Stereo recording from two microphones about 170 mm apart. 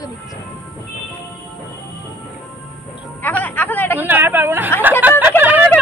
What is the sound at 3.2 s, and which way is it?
Speech, 10° left (ahead or behind).